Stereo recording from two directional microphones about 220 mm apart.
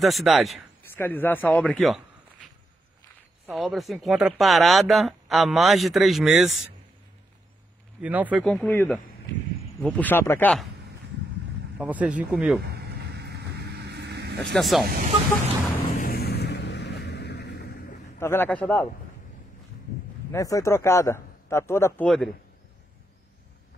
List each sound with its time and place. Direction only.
0.0 s speech: centre (ahead or behind)
3.4 s speech: centre (ahead or behind)
8.0 s a man's voice: 5° right (ahead or behind)
11.8 s speech: 5° right (ahead or behind)
12.7 s vehicle: 45° right (ahead or behind)
14.4 s speech: centre (ahead or behind)
14.9 s speech: 35° right (ahead or behind)
16.0 s vehicle: 45° left (ahead or behind)
18.2 s a man's voice: 10° left (ahead or behind)
20.3 s a man's voice: 15° left (ahead or behind)